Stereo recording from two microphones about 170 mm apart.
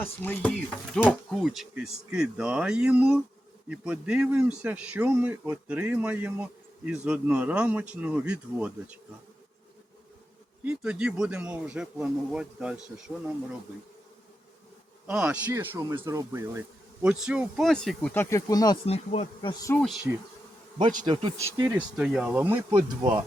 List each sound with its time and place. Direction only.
0.0 s speech: 10° left (ahead or behind)
1.0 s a man's voice: centre (ahead or behind)
10.6 s speech: 5° right (ahead or behind)
15.0 s a man's voice: 5° right (ahead or behind); by 18.8 s 20° left (ahead or behind)
18.9 s speech: 40° left (ahead or behind)
20.1 s a man's voice: 10° right (ahead or behind)
20.8 s insect: 25° right (ahead or behind)
21.3 s a man's voice: 15° right (ahead or behind)
21.9 s a man's voice: 5° right (ahead or behind)